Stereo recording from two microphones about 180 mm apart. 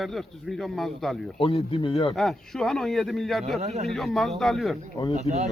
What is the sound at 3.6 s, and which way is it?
Speech, 35° right (ahead or behind).